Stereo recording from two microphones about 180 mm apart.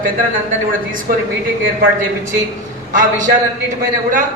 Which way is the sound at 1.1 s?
50° right (ahead or behind).